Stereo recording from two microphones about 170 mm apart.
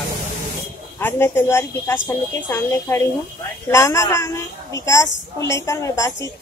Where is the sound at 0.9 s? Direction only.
15° left (ahead or behind).